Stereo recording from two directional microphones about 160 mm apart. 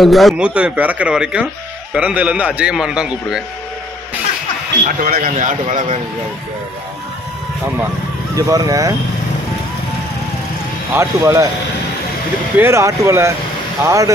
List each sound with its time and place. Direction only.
0.0 s a man's voice: centre (ahead or behind)
4.8 s a man's voice: 65° right (ahead or behind)
8.4 s speech: 20° right (ahead or behind)
10.9 s speech: 15° right (ahead or behind)
12.5 s speech: 15° right (ahead or behind)